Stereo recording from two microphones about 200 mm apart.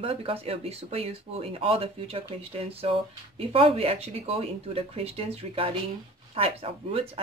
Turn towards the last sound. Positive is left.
turn(degrees=-30)  # may be behind; listen again after turning